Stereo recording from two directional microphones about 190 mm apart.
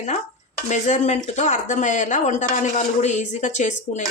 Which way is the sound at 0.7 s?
40° left (ahead or behind).